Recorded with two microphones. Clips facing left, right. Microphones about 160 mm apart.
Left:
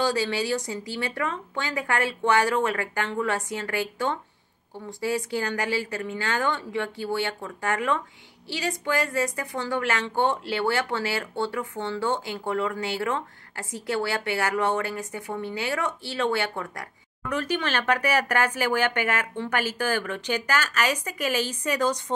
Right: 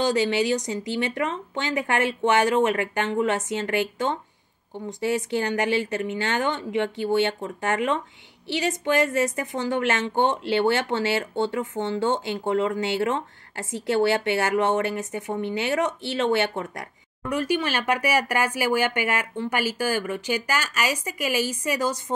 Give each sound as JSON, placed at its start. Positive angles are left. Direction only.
{"t": 0.0, "sound": "a woman's voice", "side_deg": -20}
{"t": 17.3, "sound": "speech", "side_deg": -10}